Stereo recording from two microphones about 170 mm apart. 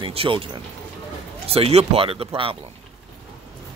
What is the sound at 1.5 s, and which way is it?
Speech, 35° right (ahead or behind).